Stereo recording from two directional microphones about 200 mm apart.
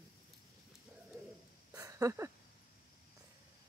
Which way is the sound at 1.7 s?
15° right (ahead or behind).